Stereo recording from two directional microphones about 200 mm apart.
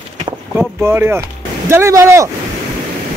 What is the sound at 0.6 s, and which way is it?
Speech, 10° right (ahead or behind).